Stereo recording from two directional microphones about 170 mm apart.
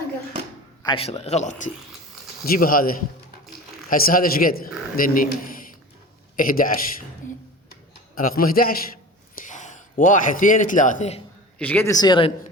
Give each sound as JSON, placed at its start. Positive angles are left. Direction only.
{"t": 0.8, "sound": "a man's voice", "side_deg": 30}
{"t": 2.4, "sound": "a man's voice", "side_deg": 60}
{"t": 7.2, "sound": "a sound", "side_deg": 45}
{"t": 8.1, "sound": "a man's voice", "side_deg": 55}
{"t": 11.6, "sound": "speech", "side_deg": 10}